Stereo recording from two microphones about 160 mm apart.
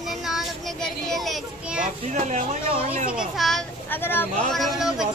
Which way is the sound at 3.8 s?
15° left (ahead or behind).